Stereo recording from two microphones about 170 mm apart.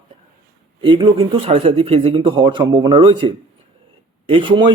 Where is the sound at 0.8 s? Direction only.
30° right (ahead or behind).